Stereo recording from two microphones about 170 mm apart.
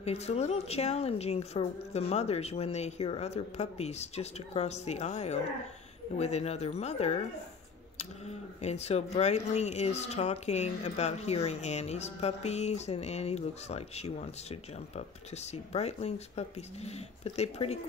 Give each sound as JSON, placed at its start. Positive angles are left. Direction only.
{"t": 0.0, "sound": "speech", "side_deg": 40}
{"t": 8.3, "sound": "speech", "side_deg": 40}